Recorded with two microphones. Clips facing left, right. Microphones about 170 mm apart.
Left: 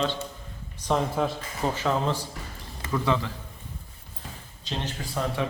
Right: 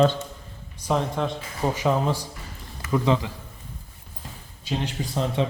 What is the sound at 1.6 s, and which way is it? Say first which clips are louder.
Speech: right 3 dB; 15° right (ahead or behind).